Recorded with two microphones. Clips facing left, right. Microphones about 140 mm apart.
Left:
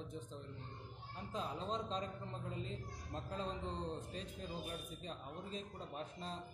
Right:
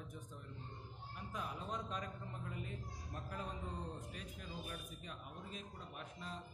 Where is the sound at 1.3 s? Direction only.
25° left (ahead or behind).